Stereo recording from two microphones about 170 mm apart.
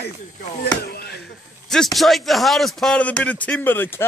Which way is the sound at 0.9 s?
70° left (ahead or behind).